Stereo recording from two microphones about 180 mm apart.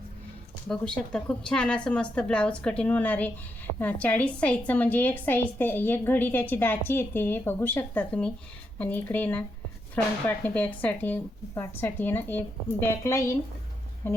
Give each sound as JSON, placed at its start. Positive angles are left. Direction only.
{"t": 0.7, "sound": "a woman's voice", "side_deg": 5}